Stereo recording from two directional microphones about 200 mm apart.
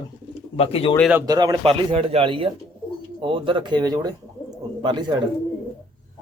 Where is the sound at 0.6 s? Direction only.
30° left (ahead or behind).